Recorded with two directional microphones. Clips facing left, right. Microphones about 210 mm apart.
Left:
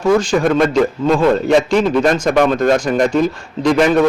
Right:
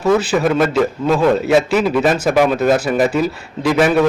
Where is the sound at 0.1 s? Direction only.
5° right (ahead or behind).